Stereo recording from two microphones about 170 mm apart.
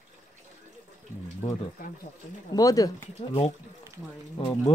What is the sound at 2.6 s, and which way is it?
Speech, 20° left (ahead or behind).